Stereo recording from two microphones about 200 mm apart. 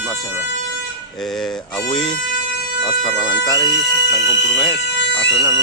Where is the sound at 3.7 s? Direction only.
65° left (ahead or behind).